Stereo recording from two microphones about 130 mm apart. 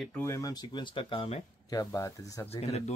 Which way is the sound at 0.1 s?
20° left (ahead or behind).